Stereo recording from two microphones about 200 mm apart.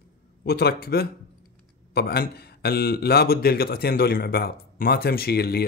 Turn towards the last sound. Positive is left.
turn(degrees=50)  # may be behind; listen again after turning